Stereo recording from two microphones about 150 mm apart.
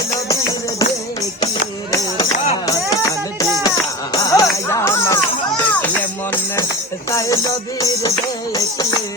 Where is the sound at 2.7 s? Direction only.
25° left (ahead or behind).